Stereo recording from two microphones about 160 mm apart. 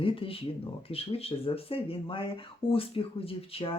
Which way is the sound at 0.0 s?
35° left (ahead or behind).